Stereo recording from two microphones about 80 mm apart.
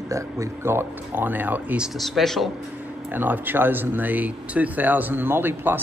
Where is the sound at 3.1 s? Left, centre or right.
Right.